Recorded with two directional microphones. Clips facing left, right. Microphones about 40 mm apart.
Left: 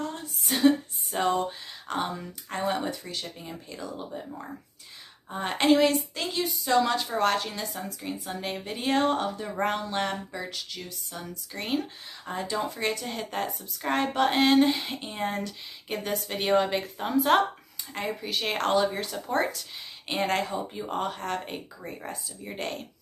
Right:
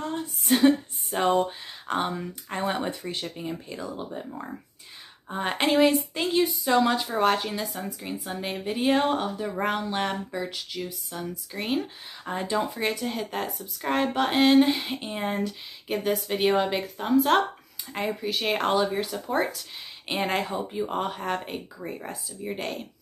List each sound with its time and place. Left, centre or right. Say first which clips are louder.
0.5 s a sound: right 2 dB; centre
1.9 s speech: right 3 dB; right
5.3 s speech: left 1 dB; centre
12.3 s speech: right 3 dB; right
12.7 s a woman's voice: right 2 dB; centre